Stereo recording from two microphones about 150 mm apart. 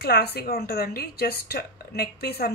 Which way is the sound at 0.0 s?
90° left.